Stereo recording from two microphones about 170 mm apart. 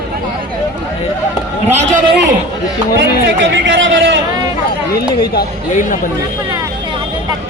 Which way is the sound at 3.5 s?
90° right.